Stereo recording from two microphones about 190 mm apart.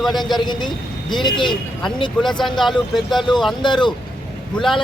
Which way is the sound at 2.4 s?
Centre (ahead or behind).